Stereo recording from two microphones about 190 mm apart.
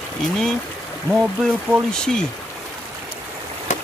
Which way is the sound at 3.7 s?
40° left (ahead or behind).